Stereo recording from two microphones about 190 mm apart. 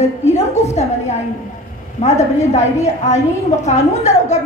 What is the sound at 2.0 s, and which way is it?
Speech, 35° left (ahead or behind).